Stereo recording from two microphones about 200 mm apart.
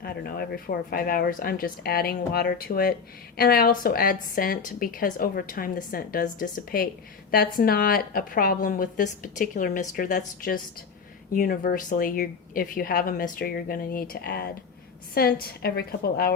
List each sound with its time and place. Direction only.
0.0 s a woman's voice: 50° left (ahead or behind)